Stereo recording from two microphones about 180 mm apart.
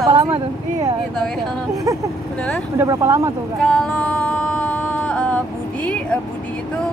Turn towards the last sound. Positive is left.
turn(degrees=5)  # may be behind; listen again after turning